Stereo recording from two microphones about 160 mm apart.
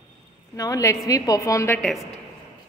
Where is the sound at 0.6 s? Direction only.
20° left (ahead or behind).